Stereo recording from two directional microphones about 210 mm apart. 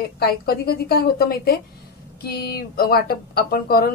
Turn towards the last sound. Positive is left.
turn(degrees=45)  # may be behind; listen again after turning